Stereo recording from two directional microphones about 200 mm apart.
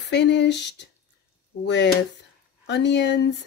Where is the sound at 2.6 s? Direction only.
60° left (ahead or behind).